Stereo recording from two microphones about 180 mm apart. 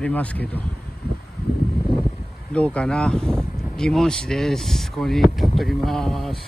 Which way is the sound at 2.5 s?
5° left (ahead or behind).